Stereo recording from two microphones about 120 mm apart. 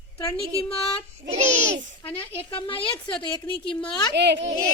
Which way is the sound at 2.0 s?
50° left (ahead or behind).